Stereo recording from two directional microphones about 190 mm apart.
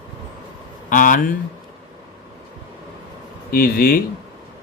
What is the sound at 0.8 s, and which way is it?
Speech, 45° left (ahead or behind).